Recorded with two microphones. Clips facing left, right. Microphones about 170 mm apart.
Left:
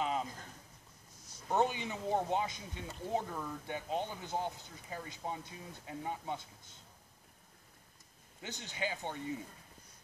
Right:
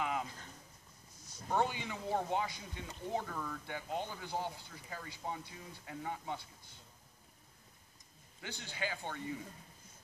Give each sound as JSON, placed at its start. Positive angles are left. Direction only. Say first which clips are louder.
{"t": 0.0, "sound": "a sound", "louder": "left 2 dB", "side_deg": 25}
{"t": 1.5, "sound": "speech", "louder": "left 2 dB", "side_deg": 20}
{"t": 8.4, "sound": "speech", "louder": "left 1 dB", "side_deg": 20}